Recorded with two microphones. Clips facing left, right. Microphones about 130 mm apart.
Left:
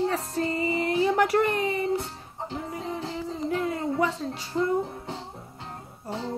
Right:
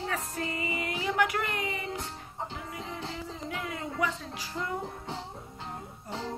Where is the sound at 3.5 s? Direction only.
35° left (ahead or behind).